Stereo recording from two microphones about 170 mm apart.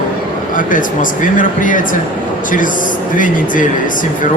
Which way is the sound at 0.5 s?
50° left (ahead or behind).